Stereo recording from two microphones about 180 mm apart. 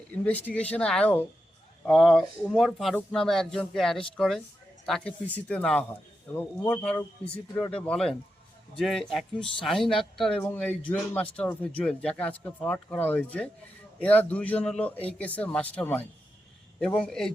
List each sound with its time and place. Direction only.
0.1 s speech: 10° left (ahead or behind)
6.9 s speech: 35° left (ahead or behind)
7.5 s speech: 5° left (ahead or behind)